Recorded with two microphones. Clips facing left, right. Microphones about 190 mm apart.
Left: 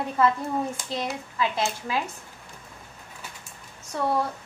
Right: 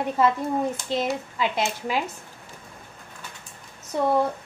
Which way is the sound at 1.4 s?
20° right (ahead or behind).